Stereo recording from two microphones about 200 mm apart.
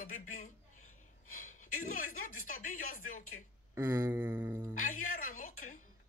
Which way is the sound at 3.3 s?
70° left (ahead or behind).